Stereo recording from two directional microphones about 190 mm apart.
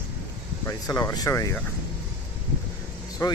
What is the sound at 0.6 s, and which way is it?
Speech, 15° left (ahead or behind).